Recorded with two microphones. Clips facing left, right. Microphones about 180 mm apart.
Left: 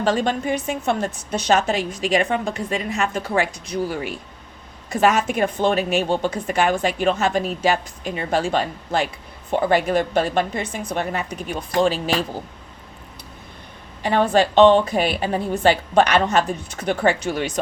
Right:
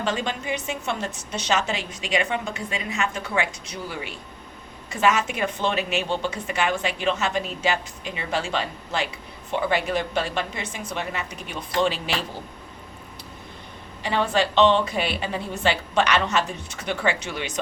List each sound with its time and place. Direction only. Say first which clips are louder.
0.0 s speech: left 7 dB; 40° left (ahead or behind)
14.0 s speech: left 5 dB; 50° left (ahead or behind)